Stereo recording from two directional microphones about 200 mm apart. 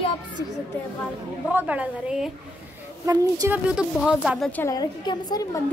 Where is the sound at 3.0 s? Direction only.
15° right (ahead or behind).